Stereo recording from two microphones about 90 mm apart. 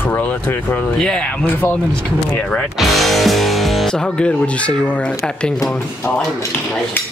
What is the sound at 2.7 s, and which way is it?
Speech, centre (ahead or behind).